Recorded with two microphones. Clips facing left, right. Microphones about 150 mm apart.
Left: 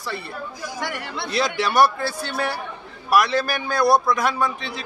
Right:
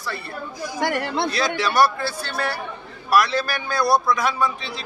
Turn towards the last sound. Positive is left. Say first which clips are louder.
# even
turn(degrees=20)  # may be behind; listen again after turning